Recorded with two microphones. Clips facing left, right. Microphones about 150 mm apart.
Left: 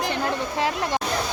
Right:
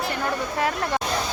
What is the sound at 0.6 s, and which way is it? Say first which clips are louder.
Speech: even; 20° left (ahead or behind).